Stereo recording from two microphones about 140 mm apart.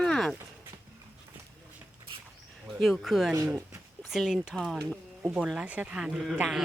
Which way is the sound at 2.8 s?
Centre (ahead or behind).